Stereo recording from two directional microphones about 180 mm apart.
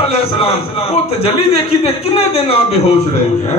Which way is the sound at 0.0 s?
35° left (ahead or behind).